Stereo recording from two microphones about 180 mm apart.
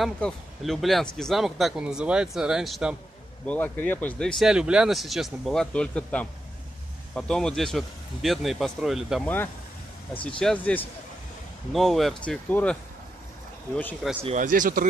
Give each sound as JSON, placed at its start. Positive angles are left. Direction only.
{"t": 0.0, "sound": "speech", "side_deg": 0}
{"t": 3.4, "sound": "speech", "side_deg": 10}
{"t": 10.4, "sound": "speech", "side_deg": 10}
{"t": 14.2, "sound": "speech", "side_deg": -45}